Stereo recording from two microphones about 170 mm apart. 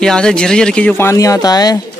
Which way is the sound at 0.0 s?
5° left (ahead or behind).